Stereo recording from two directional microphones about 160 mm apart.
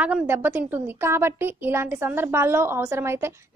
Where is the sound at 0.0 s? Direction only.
10° right (ahead or behind).